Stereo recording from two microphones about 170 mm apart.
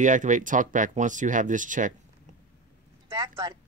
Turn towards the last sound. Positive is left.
turn(degrees=-25)  # may be behind; listen again after turning